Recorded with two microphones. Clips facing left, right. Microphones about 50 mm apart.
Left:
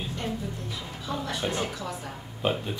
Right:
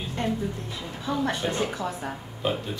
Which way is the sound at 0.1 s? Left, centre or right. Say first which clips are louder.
Right 4 dB; right.